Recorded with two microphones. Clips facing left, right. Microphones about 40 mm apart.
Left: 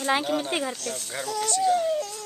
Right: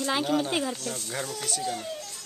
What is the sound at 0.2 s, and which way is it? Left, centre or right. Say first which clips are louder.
Speech: even; centre.